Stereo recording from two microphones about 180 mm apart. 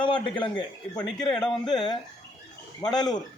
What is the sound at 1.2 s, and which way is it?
Speech, 25° left (ahead or behind).